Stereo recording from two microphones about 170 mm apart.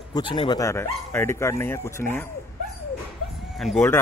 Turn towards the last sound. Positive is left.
turn(degrees=5)  # may be behind; listen again after turning